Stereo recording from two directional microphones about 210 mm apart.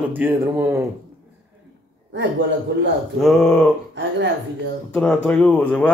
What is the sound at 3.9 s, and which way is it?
Speech, 60° right (ahead or behind).